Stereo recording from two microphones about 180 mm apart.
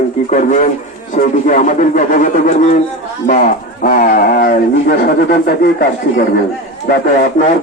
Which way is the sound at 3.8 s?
50° left (ahead or behind).